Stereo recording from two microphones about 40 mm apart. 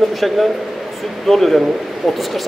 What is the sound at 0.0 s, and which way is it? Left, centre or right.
A man's voice, centre.